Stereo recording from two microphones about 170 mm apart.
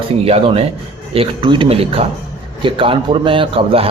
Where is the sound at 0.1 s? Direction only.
35° right (ahead or behind).